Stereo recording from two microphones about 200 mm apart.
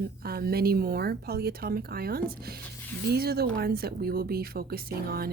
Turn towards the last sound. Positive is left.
turn(degrees=-50)  # may be behind; listen again after turning